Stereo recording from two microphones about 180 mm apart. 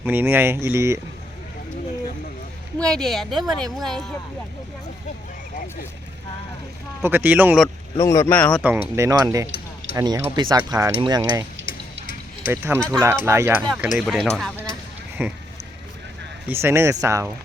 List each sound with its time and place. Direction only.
0.0 s speech: 10° right (ahead or behind)
2.7 s speech: 5° left (ahead or behind)
7.0 s speech: 10° right (ahead or behind)
7.9 s speech: 15° left (ahead or behind)
9.0 s speech: 20° right (ahead or behind)
12.5 s speech: 10° right (ahead or behind)
14.0 s speech: 5° left (ahead or behind)
15.2 s speech: 10° right (ahead or behind)
16.5 s speech: 15° right (ahead or behind)